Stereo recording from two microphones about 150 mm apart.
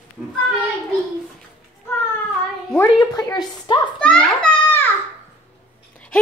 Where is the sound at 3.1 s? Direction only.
25° left (ahead or behind).